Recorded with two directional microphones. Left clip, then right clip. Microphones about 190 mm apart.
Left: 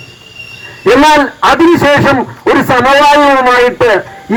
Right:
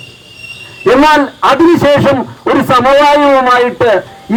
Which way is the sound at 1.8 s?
25° left (ahead or behind).